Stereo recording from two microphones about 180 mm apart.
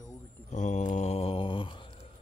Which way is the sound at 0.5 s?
40° left (ahead or behind).